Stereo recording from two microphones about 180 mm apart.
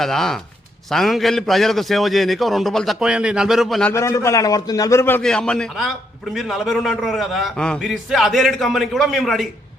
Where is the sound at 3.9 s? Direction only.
15° left (ahead or behind); by 9.5 s centre (ahead or behind).